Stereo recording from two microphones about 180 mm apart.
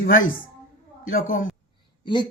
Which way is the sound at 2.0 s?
25° left (ahead or behind).